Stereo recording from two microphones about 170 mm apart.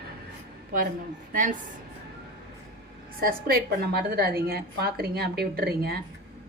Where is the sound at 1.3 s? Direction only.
50° right (ahead or behind).